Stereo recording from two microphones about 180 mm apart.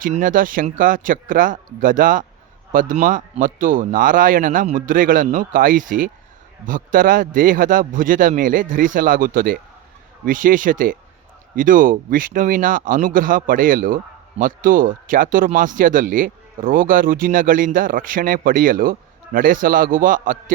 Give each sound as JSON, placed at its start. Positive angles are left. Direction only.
{"t": 0.0, "sound": "speech", "side_deg": -50}